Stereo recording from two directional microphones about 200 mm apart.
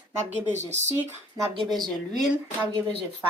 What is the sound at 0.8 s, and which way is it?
Speech, 15° right (ahead or behind).